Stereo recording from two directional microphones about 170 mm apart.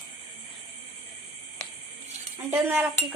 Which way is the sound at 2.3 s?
15° right (ahead or behind).